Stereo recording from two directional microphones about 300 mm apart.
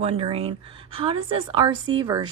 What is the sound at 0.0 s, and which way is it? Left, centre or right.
A woman's voice, centre.